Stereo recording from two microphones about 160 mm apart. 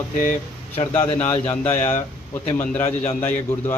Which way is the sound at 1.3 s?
15° left (ahead or behind).